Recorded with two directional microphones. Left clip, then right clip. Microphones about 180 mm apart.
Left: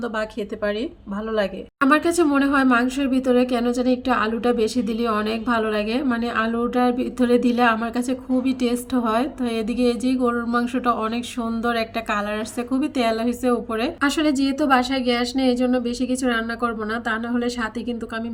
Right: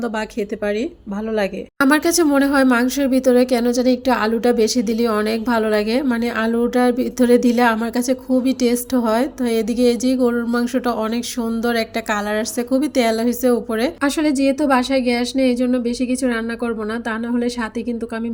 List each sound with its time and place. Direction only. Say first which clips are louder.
1.9 s a woman's voice: right 2 dB; 20° right (ahead or behind)